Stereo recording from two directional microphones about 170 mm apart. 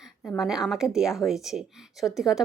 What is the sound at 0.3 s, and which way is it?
Speech, centre (ahead or behind).